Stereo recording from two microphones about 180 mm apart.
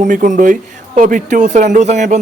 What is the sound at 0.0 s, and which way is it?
A man's voice, 45° right (ahead or behind).